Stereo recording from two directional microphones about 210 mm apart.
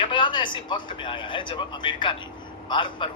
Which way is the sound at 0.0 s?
25° left (ahead or behind).